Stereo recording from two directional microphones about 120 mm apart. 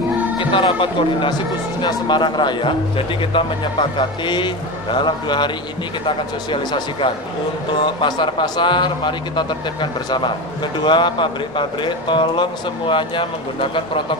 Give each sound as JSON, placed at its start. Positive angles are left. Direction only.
{"t": 0.4, "sound": "speech", "side_deg": 45}
{"t": 4.9, "sound": "speech", "side_deg": 40}